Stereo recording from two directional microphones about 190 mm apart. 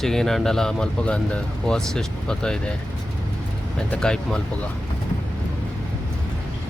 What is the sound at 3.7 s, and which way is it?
Speech, 5° left (ahead or behind).